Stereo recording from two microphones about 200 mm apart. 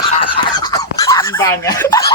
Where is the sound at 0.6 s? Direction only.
15° left (ahead or behind).